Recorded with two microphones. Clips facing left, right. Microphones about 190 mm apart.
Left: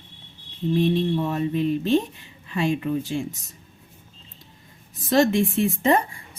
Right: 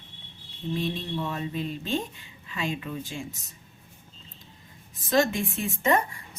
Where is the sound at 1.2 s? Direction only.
45° left (ahead or behind).